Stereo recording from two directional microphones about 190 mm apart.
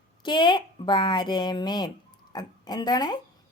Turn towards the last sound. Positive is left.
turn(degrees=20)  # may be behind; listen again after turning